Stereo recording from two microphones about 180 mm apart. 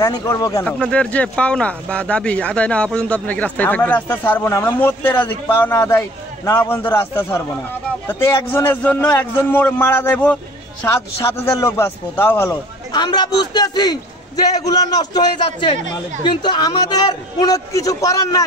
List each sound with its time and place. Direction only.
0.0 s speech: 20° left (ahead or behind)
0.7 s speech: 5° left (ahead or behind)
12.3 s speech: 15° left (ahead or behind)
12.9 s a man's voice: 25° left (ahead or behind)